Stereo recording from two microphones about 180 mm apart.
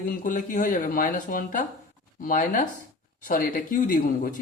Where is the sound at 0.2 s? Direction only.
45° left (ahead or behind).